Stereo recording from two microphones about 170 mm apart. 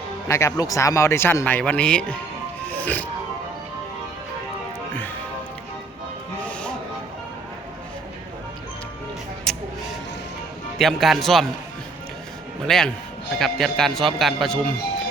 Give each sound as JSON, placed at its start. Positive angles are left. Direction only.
{"t": 0.3, "sound": "speech", "side_deg": 15}
{"t": 2.6, "sound": "music", "side_deg": 10}
{"t": 6.4, "sound": "music", "side_deg": 5}
{"t": 9.5, "sound": "music", "side_deg": 5}
{"t": 10.8, "sound": "a man's voice", "side_deg": 0}
{"t": 12.6, "sound": "a man's voice", "side_deg": 5}